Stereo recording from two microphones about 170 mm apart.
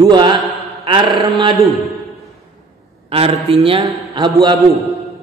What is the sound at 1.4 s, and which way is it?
Speech, 25° right (ahead or behind).